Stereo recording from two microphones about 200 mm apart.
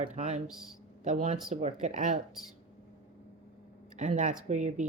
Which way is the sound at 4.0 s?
40° right (ahead or behind).